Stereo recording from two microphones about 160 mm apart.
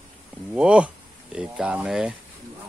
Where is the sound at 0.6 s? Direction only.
5° right (ahead or behind).